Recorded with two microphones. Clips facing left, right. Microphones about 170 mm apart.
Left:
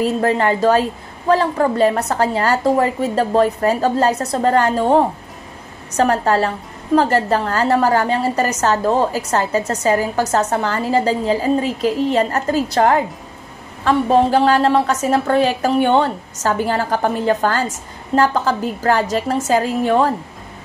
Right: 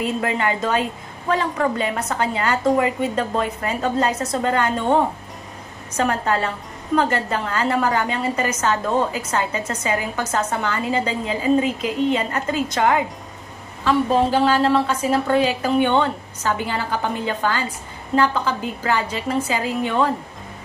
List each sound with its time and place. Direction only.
0.0 s a woman's voice: 40° left (ahead or behind)
5.9 s a woman's voice: 35° left (ahead or behind)